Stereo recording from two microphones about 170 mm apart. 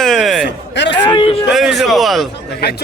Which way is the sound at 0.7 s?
90° left.